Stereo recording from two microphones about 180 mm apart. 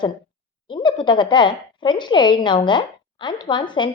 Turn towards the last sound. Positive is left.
turn(degrees=25)  # may be behind; listen again after turning